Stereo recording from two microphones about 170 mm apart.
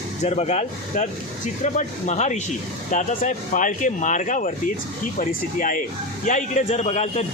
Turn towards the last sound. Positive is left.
turn(degrees=40)  # may be behind; listen again after turning